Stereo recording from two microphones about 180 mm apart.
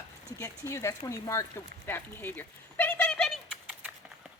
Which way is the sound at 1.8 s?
10° left (ahead or behind).